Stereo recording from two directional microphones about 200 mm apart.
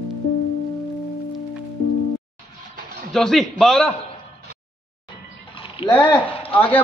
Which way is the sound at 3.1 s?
Centre (ahead or behind).